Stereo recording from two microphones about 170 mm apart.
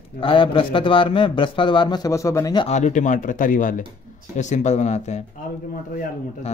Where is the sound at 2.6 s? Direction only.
45° left (ahead or behind).